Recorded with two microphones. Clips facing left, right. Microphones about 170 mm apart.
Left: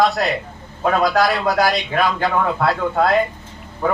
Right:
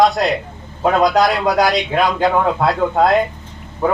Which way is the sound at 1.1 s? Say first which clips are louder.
Right 2 dB; 20° right (ahead or behind).